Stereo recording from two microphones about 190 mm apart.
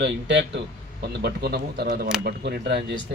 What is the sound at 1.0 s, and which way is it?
Speech, 60° right (ahead or behind).